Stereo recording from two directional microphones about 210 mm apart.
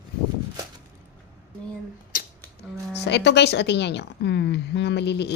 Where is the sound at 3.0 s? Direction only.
55° left (ahead or behind).